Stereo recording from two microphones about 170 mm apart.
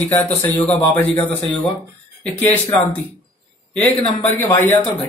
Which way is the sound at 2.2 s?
10° left (ahead or behind).